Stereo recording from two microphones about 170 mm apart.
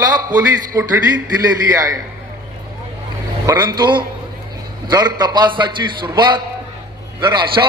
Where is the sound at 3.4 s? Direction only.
25° right (ahead or behind).